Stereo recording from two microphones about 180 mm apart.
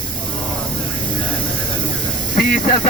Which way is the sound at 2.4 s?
50° left (ahead or behind).